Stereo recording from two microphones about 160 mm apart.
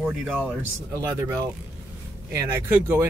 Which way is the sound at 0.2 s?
5° left (ahead or behind).